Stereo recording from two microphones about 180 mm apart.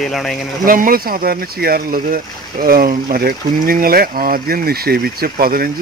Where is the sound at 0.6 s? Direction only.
50° right (ahead or behind).